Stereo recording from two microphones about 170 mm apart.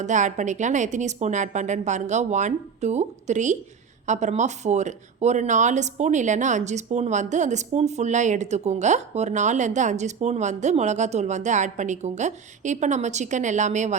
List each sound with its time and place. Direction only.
0.0 s speech: 45° right (ahead or behind)